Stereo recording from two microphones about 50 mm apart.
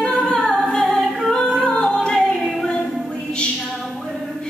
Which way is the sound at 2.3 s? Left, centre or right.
Centre.